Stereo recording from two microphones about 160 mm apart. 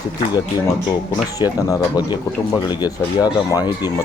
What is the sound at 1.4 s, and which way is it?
Speech, 25° left (ahead or behind).